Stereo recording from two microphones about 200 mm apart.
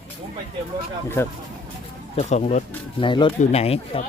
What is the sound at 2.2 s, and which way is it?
Speech, 35° left (ahead or behind).